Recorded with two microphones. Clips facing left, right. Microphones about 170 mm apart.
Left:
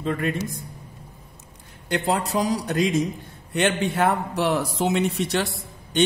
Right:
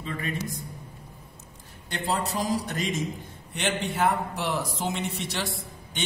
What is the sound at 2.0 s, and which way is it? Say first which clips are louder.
A woman's voice: left 4 dB; 65° left (ahead or behind).